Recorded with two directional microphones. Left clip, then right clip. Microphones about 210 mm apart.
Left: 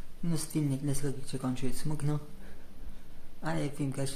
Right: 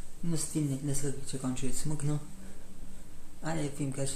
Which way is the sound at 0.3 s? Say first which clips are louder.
Even; 30° left (ahead or behind).